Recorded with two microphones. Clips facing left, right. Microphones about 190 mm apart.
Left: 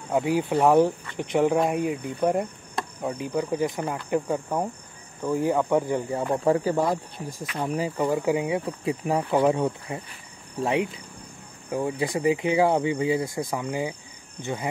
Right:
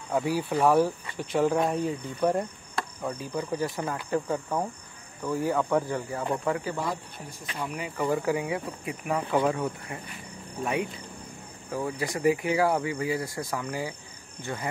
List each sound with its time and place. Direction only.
0.1 s speech: 20° left (ahead or behind)
8.1 s speech: 20° left (ahead or behind)